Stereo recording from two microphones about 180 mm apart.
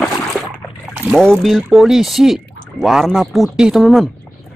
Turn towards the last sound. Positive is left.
turn(degrees=0)  # may be behind; listen again after turning